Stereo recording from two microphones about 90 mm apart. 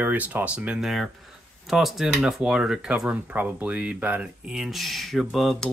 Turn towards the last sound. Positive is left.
turn(degrees=0)  # may be behind; listen again after turning